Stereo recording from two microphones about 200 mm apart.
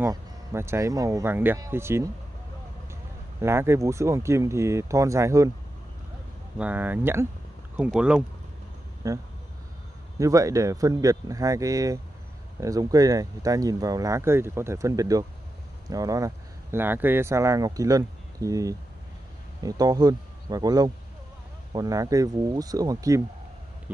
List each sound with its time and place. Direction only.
0.0 s speech: 15° right (ahead or behind)
6.6 s speech: 10° right (ahead or behind)
9.0 s speech: 15° right (ahead or behind)